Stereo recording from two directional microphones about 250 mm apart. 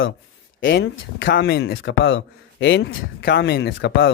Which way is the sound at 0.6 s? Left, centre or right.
Left.